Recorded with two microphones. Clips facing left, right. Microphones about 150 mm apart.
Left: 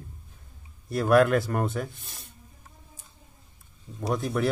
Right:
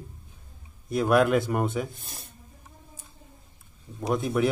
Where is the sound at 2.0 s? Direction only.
40° right (ahead or behind).